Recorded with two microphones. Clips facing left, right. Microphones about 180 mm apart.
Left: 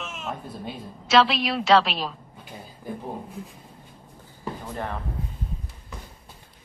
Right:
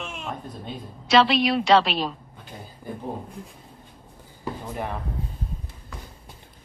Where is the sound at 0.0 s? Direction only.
Centre (ahead or behind).